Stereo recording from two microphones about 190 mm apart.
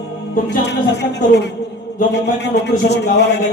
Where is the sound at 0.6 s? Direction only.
65° left (ahead or behind).